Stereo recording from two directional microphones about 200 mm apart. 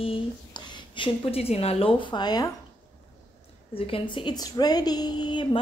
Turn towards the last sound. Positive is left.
turn(degrees=20)  # may be behind; listen again after turning